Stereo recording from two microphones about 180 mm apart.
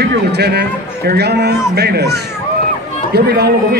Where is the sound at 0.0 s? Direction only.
65° right (ahead or behind).